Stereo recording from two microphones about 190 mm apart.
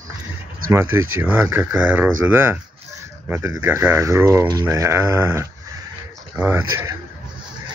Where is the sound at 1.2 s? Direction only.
10° right (ahead or behind).